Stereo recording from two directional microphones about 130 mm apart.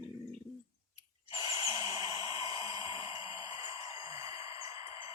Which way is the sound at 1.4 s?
30° right (ahead or behind).